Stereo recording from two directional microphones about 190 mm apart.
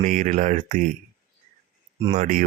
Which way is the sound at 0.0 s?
40° right (ahead or behind).